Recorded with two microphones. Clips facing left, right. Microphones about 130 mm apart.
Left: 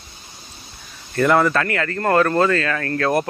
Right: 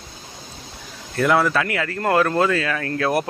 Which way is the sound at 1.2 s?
Centre (ahead or behind).